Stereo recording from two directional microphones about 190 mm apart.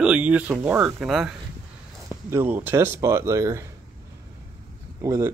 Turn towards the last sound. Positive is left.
turn(degrees=-15)  # may be behind; listen again after turning